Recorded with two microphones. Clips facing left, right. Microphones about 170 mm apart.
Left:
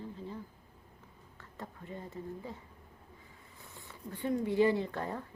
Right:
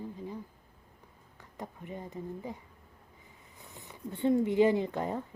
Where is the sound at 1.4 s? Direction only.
15° right (ahead or behind).